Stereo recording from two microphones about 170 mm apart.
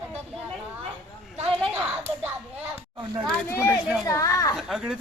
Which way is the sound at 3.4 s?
15° left (ahead or behind).